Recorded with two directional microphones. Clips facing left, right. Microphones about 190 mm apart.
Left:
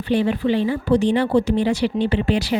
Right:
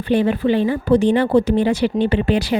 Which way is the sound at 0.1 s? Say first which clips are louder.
Right 2 dB; 50° right (ahead or behind).